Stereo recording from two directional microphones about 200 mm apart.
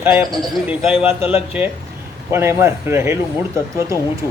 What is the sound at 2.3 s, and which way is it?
Speech, 15° right (ahead or behind).